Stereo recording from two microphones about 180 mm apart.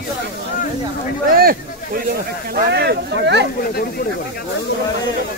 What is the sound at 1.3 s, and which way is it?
Speech, 55° right (ahead or behind).